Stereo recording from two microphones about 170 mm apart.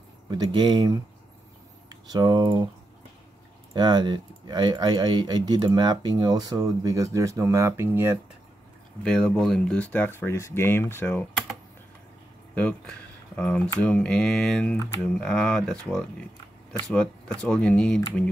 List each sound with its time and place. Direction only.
0.3 s speech: 25° right (ahead or behind)
3.7 s speech: 25° right (ahead or behind)
9.0 s speech: 5° left (ahead or behind)
12.5 s speech: 10° left (ahead or behind)